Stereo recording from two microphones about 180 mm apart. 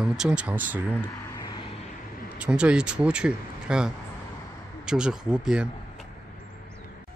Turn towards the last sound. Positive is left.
turn(degrees=-5)  # may be behind; listen again after turning